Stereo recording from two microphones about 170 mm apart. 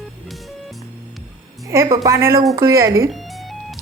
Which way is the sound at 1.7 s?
20° right (ahead or behind).